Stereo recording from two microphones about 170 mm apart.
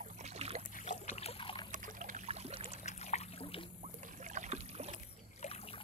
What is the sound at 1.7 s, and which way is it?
Boat, 50° right (ahead or behind).